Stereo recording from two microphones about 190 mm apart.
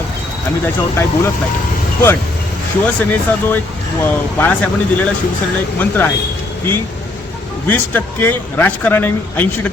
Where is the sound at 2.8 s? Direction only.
10° left (ahead or behind).